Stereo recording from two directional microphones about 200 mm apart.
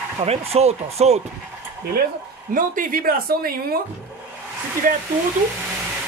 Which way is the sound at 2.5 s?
45° right (ahead or behind).